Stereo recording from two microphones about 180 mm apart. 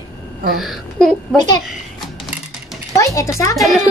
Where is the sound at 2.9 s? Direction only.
15° left (ahead or behind).